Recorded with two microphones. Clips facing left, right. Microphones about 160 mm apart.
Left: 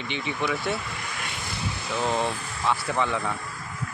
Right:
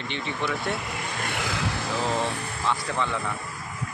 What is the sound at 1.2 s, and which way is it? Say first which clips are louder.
Vehicle: right 7 dB; 75° right (ahead or behind).